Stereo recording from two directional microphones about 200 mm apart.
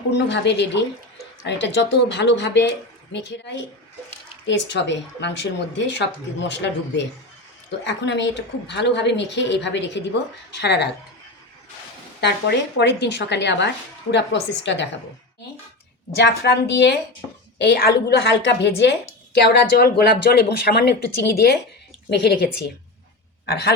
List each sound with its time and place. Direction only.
0.3 s a woman's voice: 60° left (ahead or behind)
12.2 s a woman's voice: 55° left (ahead or behind)
16.2 s a woman's voice: 55° left (ahead or behind)
22.1 s a woman's voice: 55° left (ahead or behind)